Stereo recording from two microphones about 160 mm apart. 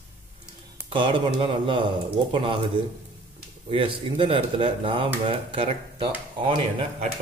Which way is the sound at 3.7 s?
35° right (ahead or behind).